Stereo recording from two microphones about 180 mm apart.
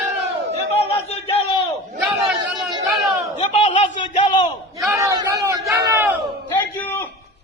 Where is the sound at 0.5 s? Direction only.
35° left (ahead or behind).